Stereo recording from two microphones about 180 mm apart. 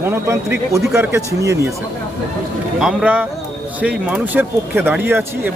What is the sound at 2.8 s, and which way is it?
Speech, 10° right (ahead or behind).